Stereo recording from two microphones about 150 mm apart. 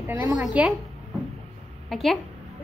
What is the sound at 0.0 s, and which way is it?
Speech, 10° right (ahead or behind).